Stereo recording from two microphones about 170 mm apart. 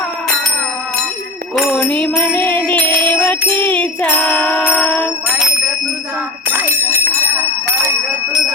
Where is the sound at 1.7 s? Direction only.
10° left (ahead or behind).